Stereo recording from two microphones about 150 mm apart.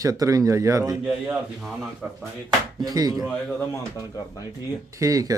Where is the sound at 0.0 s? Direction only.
20° right (ahead or behind).